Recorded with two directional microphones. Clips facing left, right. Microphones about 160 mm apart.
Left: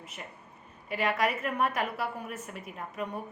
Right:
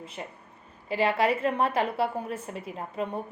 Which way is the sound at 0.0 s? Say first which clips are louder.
Right 6 dB; 30° right (ahead or behind).